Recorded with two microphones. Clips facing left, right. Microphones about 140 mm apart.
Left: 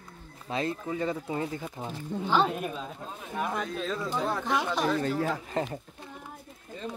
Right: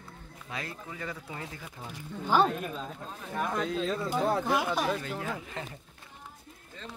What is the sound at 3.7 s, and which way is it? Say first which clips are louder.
Speech: right 1 dB; 15° right (ahead or behind).